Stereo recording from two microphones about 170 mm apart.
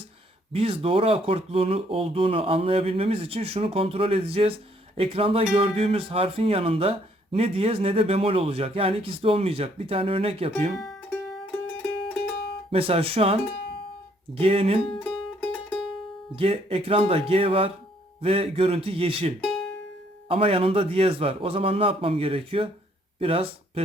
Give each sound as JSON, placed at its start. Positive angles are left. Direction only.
{"t": 0.5, "sound": "speech", "side_deg": -35}
{"t": 10.8, "sound": "music", "side_deg": 0}
{"t": 12.7, "sound": "speech", "side_deg": -35}
{"t": 14.9, "sound": "music", "side_deg": 5}
{"t": 16.3, "sound": "speech", "side_deg": -35}